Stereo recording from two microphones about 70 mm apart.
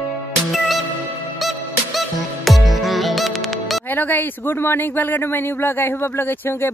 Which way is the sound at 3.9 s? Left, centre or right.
Left.